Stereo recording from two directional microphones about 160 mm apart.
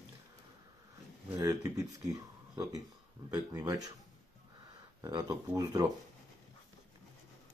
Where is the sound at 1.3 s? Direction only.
20° right (ahead or behind).